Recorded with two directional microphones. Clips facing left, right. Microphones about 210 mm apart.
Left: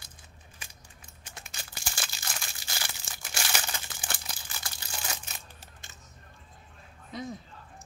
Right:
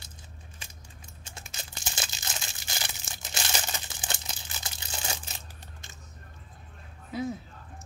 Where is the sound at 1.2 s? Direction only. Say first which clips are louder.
Right 1 dB; 25° right (ahead or behind).